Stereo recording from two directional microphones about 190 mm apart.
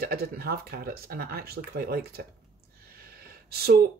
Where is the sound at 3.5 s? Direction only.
55° right (ahead or behind).